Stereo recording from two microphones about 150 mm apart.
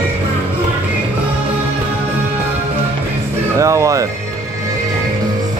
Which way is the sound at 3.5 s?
20° right (ahead or behind).